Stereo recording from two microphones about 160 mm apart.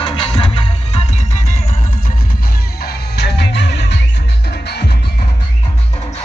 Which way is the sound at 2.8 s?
90° left.